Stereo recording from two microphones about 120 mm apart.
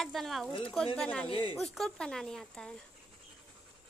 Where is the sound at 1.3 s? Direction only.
45° left (ahead or behind).